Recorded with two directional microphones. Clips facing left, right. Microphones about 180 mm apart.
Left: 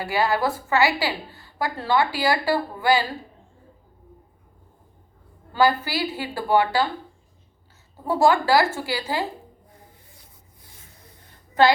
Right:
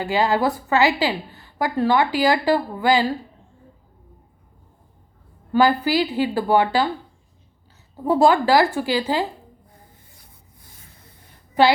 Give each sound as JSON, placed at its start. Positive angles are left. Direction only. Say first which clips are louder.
{"t": 0.0, "sound": "a woman's voice", "louder": "right 3 dB", "side_deg": -20}
{"t": 5.5, "sound": "a woman's voice", "louder": "right 3 dB", "side_deg": -15}
{"t": 8.0, "sound": "a woman's voice", "louder": "right 3 dB", "side_deg": -20}